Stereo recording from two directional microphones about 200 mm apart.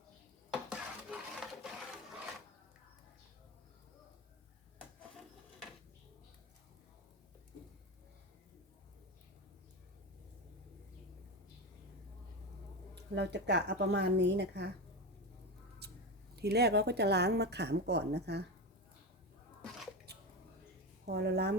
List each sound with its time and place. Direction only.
0.7 s a sound: centre (ahead or behind)
13.1 s a woman's voice: 60° right (ahead or behind)
16.3 s a woman's voice: 55° right (ahead or behind)
21.1 s a woman's voice: 55° right (ahead or behind)